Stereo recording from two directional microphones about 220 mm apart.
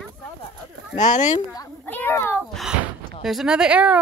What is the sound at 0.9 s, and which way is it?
Speech, 35° left (ahead or behind).